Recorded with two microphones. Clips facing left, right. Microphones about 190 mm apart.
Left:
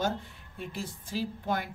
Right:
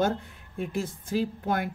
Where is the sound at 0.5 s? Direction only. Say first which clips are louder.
Right 7 dB; 50° right (ahead or behind).